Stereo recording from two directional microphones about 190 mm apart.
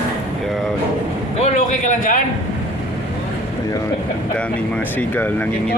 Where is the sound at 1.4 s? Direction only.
40° left (ahead or behind).